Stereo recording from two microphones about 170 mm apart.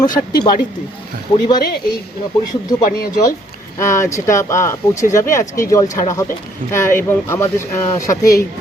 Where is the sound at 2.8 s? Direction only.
60° left (ahead or behind).